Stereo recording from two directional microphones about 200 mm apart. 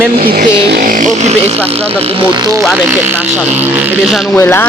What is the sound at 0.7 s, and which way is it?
Speech, 45° right (ahead or behind).